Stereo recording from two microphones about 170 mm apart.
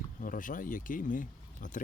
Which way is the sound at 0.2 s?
50° left (ahead or behind).